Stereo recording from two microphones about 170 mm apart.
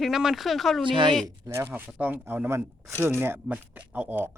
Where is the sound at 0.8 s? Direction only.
30° right (ahead or behind).